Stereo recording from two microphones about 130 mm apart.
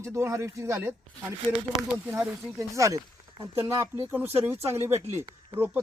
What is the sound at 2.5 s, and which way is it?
Speech, 25° right (ahead or behind).